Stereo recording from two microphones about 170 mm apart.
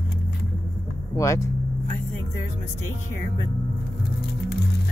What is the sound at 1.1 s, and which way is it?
Speech, 15° left (ahead or behind).